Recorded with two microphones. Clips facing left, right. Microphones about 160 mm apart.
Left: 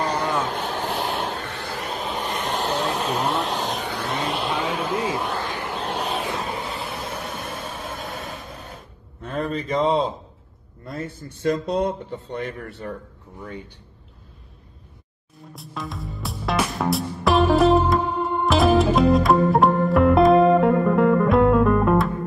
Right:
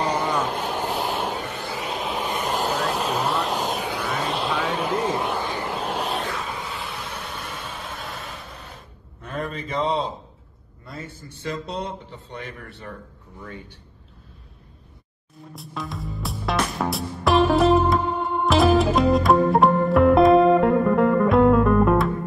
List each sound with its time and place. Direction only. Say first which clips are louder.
0.0 s vehicle: even; 10° right (ahead or behind)
5.4 s vehicle: right 1 dB; 15° right (ahead or behind)
5.7 s vehicle: even; 5° right (ahead or behind)
6.3 s vehicle: left 3 dB; 40° left (ahead or behind)
9.2 s a sound: left 4 dB; 35° left (ahead or behind)
11.7 s a man's voice: left 8 dB; 50° left (ahead or behind)
13.4 s speech: left 3 dB; 20° left (ahead or behind)
15.5 s music: even; centre (ahead or behind)